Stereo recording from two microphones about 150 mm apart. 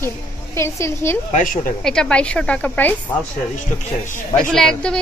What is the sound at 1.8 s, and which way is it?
A woman's voice, 5° left (ahead or behind).